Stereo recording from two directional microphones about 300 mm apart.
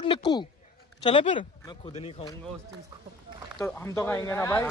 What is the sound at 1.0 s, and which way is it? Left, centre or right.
Speech, centre.